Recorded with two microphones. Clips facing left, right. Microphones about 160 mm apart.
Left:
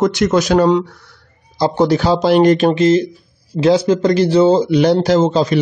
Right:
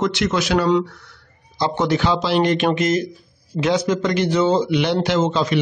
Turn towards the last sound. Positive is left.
turn(degrees=35)  # may be behind; listen again after turning